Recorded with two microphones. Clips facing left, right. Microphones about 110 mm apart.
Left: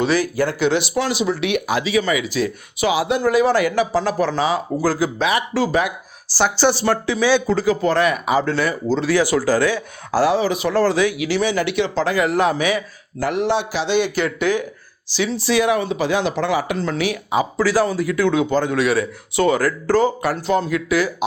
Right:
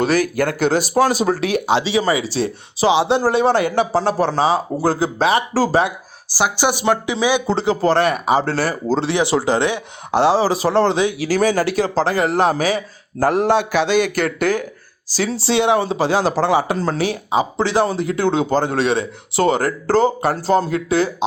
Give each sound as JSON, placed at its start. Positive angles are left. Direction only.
{"t": 0.0, "sound": "speech", "side_deg": -50}
{"t": 6.3, "sound": "speech", "side_deg": -10}
{"t": 7.4, "sound": "speech", "side_deg": -30}
{"t": 9.0, "sound": "speech", "side_deg": -25}
{"t": 11.3, "sound": "speech", "side_deg": -45}